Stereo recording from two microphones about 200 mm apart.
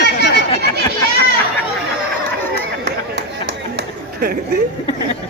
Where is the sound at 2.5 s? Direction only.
60° right (ahead or behind).